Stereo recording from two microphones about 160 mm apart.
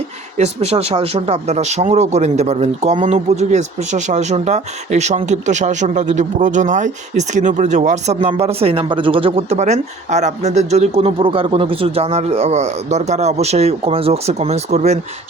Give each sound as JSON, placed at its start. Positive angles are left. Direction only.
{"t": 0.3, "sound": "speech", "side_deg": -40}